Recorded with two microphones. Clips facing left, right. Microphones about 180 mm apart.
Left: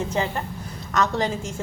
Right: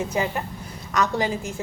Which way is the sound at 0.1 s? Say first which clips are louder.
Even; 10° right (ahead or behind).